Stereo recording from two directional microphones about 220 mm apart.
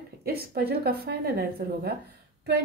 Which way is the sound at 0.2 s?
45° right (ahead or behind).